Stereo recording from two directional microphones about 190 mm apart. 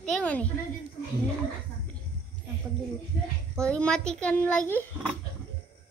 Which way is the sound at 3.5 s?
5° left (ahead or behind).